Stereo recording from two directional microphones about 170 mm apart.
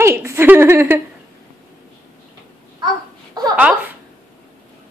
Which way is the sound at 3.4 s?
20° right (ahead or behind).